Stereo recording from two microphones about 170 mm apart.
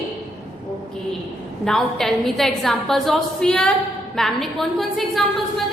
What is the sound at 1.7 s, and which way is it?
A woman's voice, centre (ahead or behind).